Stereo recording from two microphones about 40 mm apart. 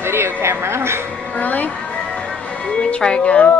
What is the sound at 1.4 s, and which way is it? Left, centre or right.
Speech, left.